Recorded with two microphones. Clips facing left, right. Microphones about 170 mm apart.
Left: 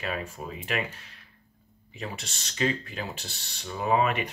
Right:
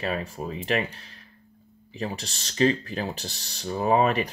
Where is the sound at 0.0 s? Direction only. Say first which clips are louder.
Right 4 dB; 35° right (ahead or behind).